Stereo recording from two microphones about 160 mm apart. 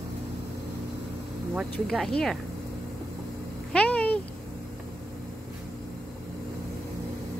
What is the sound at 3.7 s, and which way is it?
Cat, 10° left (ahead or behind).